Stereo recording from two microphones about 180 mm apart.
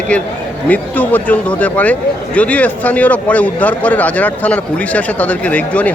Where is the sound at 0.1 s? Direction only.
5° left (ahead or behind).